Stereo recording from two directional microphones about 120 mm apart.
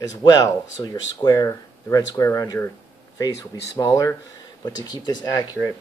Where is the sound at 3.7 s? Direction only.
30° left (ahead or behind).